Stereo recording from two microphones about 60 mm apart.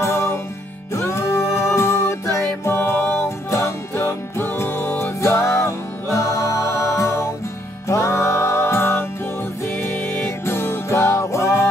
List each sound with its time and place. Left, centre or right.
0.0 s music: left
10.4 s music: left